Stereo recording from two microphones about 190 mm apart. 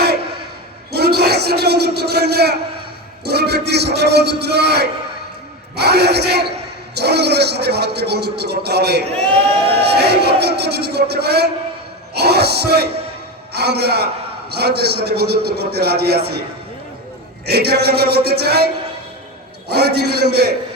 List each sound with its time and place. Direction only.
0.9 s a sound: 55° right (ahead or behind)
3.2 s a man's voice: 60° right (ahead or behind)
9.3 s speech: 30° right (ahead or behind)
9.8 s a man's voice: 60° right (ahead or behind)
12.1 s music: 60° right (ahead or behind)
13.5 s a man's voice: 60° right (ahead or behind)
17.4 s a man's voice: 55° right (ahead or behind)